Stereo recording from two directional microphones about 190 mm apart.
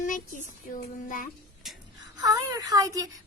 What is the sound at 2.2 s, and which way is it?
Speech, 20° right (ahead or behind).